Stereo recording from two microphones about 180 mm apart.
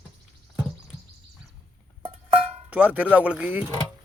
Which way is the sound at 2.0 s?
30° right (ahead or behind).